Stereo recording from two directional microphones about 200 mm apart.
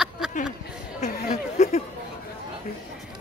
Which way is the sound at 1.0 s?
35° left (ahead or behind).